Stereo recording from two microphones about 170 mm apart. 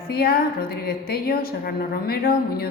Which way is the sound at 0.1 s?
65° left (ahead or behind).